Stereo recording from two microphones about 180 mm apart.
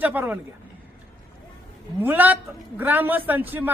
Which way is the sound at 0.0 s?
10° right (ahead or behind).